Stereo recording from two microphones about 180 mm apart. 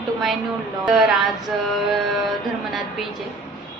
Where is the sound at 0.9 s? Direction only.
Centre (ahead or behind).